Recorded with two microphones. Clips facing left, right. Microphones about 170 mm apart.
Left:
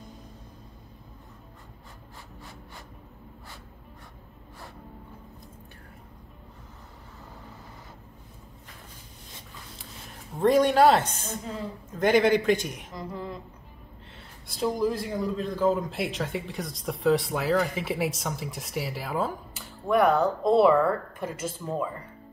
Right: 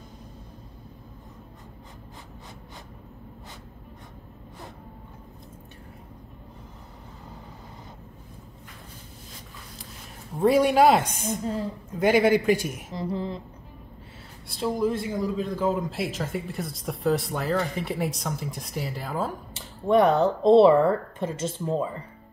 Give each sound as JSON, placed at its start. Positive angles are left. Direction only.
{"t": 10.4, "sound": "speech", "side_deg": -10}
{"t": 12.9, "sound": "speech", "side_deg": -30}
{"t": 14.5, "sound": "speech", "side_deg": 0}
{"t": 19.5, "sound": "speech", "side_deg": -25}